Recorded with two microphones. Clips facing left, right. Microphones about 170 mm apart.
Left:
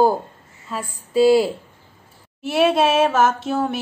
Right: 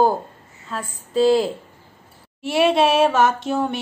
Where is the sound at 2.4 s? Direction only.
Centre (ahead or behind).